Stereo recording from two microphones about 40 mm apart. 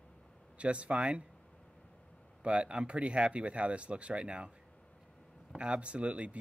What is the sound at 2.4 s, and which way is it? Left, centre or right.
Speech, right.